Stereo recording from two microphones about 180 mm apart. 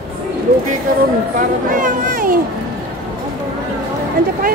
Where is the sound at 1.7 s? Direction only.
50° right (ahead or behind).